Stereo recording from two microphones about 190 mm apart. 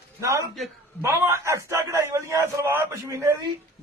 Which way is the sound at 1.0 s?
15° right (ahead or behind).